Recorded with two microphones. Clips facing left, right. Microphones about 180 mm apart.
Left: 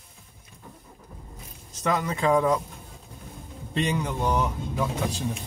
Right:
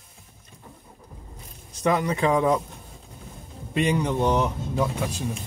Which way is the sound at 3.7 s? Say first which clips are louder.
Right 4 dB; 15° right (ahead or behind).